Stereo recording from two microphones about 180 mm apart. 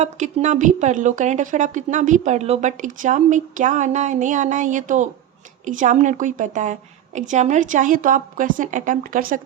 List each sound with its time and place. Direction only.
0.0 s a woman's voice: 40° right (ahead or behind)